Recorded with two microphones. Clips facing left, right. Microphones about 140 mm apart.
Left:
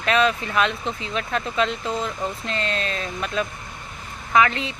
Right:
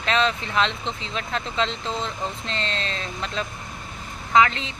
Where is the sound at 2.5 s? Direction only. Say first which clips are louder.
Left 3 dB; 25° right (ahead or behind).